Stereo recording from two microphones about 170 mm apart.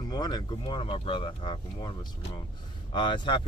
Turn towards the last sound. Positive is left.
turn(degrees=30)  # may be behind; listen again after turning